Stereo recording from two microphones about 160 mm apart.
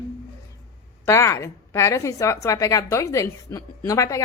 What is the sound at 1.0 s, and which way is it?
A woman's voice, 20° left (ahead or behind).